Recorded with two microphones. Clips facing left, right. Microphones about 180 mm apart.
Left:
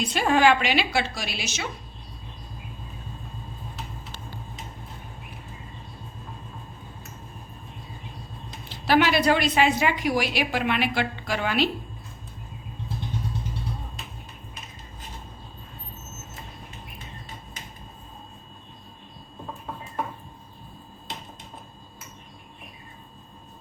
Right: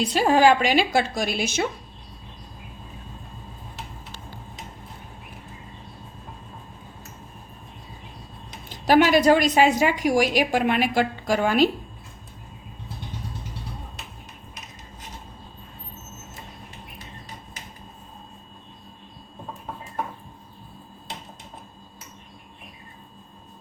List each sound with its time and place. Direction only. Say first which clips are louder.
0.0 s a woman's voice: right 3 dB; 35° right (ahead or behind); by 1.6 s 50° right (ahead or behind)
8.7 s a woman's voice: right 4 dB; 45° right (ahead or behind)